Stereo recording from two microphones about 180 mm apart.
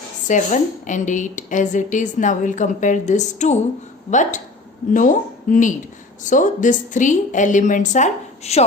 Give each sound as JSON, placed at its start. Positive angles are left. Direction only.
{"t": 0.3, "sound": "a woman's voice", "side_deg": 45}